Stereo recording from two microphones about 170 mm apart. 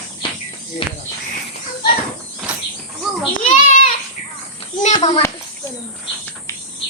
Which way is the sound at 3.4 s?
45° left (ahead or behind).